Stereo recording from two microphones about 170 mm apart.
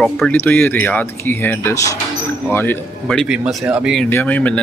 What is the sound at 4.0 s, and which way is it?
Speech, 10° left (ahead or behind).